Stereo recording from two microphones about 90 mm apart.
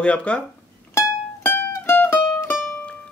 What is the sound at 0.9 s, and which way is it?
Music, 25° left (ahead or behind).